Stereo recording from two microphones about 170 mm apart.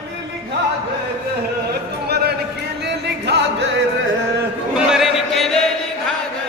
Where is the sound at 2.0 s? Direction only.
70° right (ahead or behind).